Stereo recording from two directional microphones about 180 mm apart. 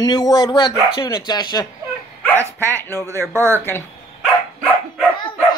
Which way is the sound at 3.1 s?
15° right (ahead or behind).